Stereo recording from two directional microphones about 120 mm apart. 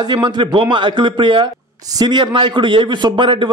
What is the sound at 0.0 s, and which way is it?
A man's voice, 40° right (ahead or behind).